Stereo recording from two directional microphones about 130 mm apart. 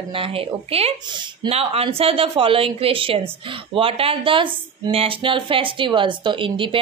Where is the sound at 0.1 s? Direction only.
45° right (ahead or behind).